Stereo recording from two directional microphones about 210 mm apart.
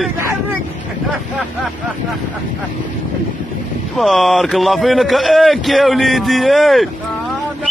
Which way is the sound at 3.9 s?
Centre (ahead or behind).